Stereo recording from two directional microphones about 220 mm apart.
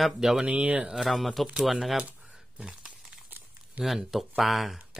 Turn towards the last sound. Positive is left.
turn(degrees=0)  # may be behind; listen again after turning